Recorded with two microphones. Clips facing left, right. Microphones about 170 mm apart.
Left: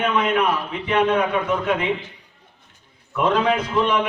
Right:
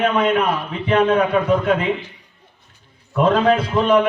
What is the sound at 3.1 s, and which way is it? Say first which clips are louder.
Speech: right 4 dB; 30° right (ahead or behind).